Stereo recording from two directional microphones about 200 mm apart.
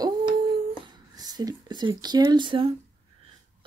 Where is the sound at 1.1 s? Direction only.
20° right (ahead or behind).